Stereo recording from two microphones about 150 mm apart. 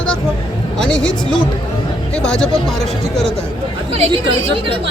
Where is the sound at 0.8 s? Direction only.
5° left (ahead or behind).